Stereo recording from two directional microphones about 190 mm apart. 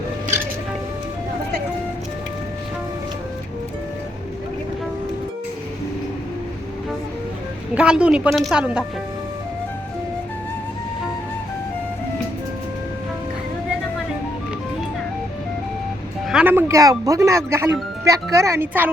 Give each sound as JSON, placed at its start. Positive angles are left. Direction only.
{"t": 7.8, "sound": "speech", "side_deg": -5}
{"t": 16.3, "sound": "speech", "side_deg": -10}